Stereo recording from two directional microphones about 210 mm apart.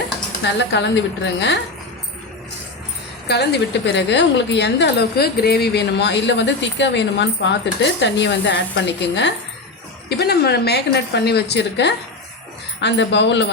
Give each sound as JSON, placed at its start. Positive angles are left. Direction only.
{"t": 0.4, "sound": "a woman's voice", "side_deg": 55}
{"t": 3.2, "sound": "a woman's voice", "side_deg": 50}